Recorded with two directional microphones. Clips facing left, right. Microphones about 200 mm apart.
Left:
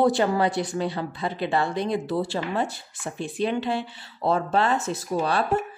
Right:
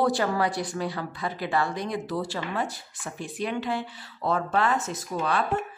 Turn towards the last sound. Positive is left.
turn(degrees=35)  # may be behind; listen again after turning